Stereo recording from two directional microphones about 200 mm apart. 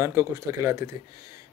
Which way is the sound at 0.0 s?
15° right (ahead or behind).